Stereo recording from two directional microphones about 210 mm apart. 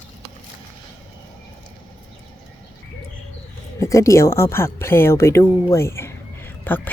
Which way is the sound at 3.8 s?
15° left (ahead or behind).